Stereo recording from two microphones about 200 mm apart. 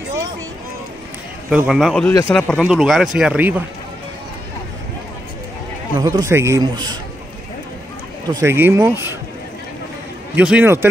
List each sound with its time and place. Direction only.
1.5 s speech: 5° right (ahead or behind)
5.9 s a man's voice: 15° right (ahead or behind)
8.3 s a man's voice: 15° right (ahead or behind)
10.3 s a man's voice: 10° right (ahead or behind)